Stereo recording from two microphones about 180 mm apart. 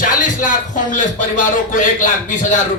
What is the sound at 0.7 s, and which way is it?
A man's voice, 45° left (ahead or behind).